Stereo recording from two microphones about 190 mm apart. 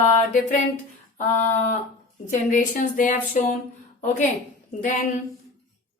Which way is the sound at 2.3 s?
40° left (ahead or behind).